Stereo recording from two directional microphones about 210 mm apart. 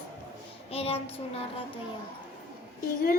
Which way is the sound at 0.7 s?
30° left (ahead or behind).